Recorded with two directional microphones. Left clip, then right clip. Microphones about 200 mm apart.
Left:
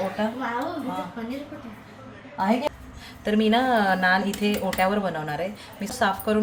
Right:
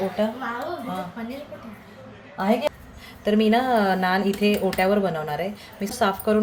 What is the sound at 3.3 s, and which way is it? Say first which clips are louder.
A woman's voice: right 1 dB; 10° right (ahead or behind).